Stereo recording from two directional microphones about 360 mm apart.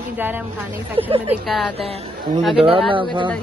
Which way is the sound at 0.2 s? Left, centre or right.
Centre.